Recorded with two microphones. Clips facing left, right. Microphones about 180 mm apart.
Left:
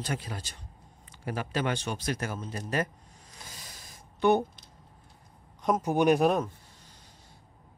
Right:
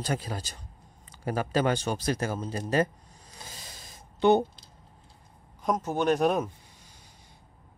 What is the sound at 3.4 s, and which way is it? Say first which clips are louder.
Rub: right 2 dB; 25° right (ahead or behind).